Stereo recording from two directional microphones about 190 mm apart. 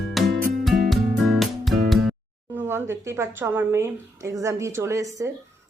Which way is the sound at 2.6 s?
10° right (ahead or behind).